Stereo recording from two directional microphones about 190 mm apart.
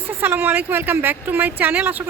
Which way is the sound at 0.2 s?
10° right (ahead or behind).